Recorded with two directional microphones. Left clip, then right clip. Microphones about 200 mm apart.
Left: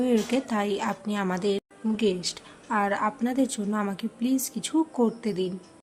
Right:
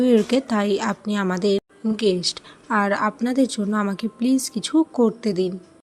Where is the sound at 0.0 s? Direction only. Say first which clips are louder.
Right 7 dB; 20° right (ahead or behind).